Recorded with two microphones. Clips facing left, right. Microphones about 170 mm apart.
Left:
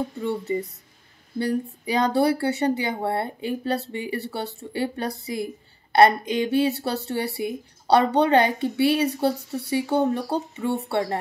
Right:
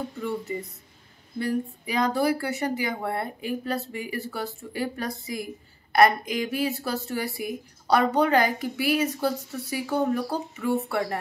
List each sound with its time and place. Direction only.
0.2 s a woman's voice: 25° left (ahead or behind)